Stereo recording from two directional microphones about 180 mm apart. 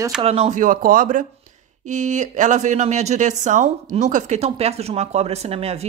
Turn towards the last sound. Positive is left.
turn(degrees=-35)  # may be behind; listen again after turning